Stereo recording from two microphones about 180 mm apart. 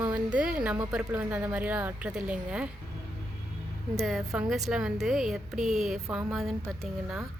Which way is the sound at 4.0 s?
Centre (ahead or behind).